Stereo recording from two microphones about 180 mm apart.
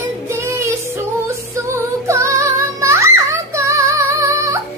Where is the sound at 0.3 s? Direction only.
15° right (ahead or behind).